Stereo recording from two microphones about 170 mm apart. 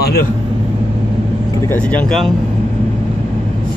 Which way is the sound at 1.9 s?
Centre (ahead or behind).